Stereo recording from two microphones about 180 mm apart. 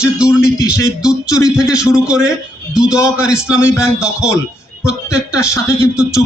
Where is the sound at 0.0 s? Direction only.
5° right (ahead or behind).